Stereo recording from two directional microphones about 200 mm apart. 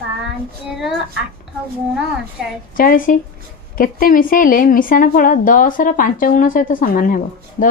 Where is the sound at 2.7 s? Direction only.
45° left (ahead or behind).